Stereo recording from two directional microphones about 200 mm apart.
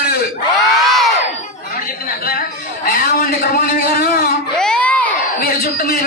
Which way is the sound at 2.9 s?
50° left (ahead or behind).